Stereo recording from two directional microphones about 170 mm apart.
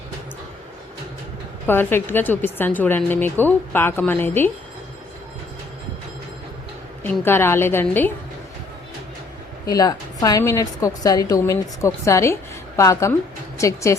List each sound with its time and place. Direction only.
1.6 s a woman's voice: 10° left (ahead or behind)
7.0 s a woman's voice: 15° left (ahead or behind)
9.6 s a woman's voice: 20° left (ahead or behind)